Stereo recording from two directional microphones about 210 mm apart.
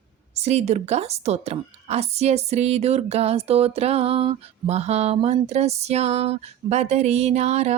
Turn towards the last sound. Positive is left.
turn(degrees=-30)  # may be behind; listen again after turning